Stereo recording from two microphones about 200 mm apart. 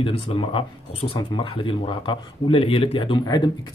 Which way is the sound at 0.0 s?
25° left (ahead or behind).